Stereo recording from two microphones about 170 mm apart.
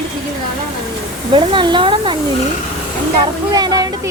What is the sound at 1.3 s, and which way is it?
Speech, 30° right (ahead or behind).